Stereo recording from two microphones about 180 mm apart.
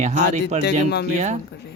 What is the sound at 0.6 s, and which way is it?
Speech, 65° left (ahead or behind).